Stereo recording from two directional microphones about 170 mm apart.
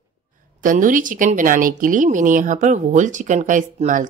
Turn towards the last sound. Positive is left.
turn(degrees=-50)  # may be behind; listen again after turning